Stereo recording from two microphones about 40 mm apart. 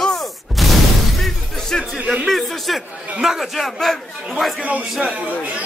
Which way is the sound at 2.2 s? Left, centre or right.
Centre.